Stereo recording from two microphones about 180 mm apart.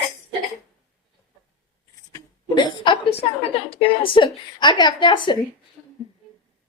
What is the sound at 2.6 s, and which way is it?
A woman's voice, 25° left (ahead or behind).